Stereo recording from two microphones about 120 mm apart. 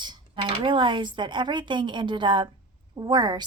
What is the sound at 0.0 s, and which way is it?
A woman's voice, 40° right (ahead or behind).